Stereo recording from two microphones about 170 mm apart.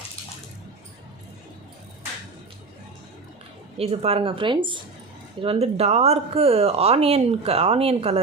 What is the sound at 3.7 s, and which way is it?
Speech, 35° right (ahead or behind).